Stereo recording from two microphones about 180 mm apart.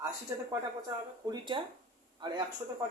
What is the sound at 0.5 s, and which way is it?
Speech, 20° right (ahead or behind).